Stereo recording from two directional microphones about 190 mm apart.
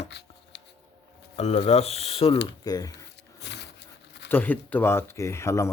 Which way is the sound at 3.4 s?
65° left (ahead or behind).